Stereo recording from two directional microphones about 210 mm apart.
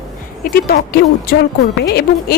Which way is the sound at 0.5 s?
45° left (ahead or behind).